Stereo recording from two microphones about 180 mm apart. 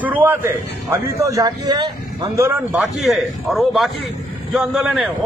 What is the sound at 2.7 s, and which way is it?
A man's voice, centre (ahead or behind).